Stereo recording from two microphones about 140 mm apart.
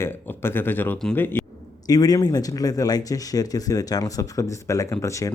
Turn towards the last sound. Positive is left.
turn(degrees=25)  # may be behind; listen again after turning